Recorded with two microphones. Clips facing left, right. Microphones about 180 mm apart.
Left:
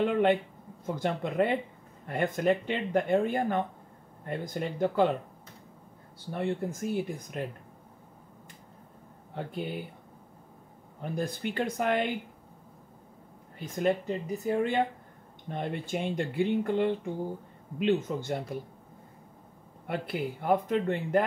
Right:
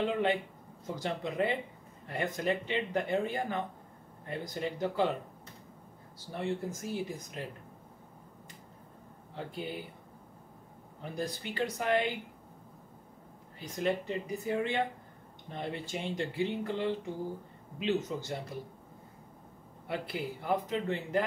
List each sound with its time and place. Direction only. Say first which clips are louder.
0.0 s speech: left 5 dB; 55° left (ahead or behind)
6.3 s speech: left 3 dB; 55° left (ahead or behind)
11.0 s speech: left 4 dB; 55° left (ahead or behind)
13.7 s speech: left 4 dB; 45° left (ahead or behind)
19.9 s speech: left 4 dB; 50° left (ahead or behind)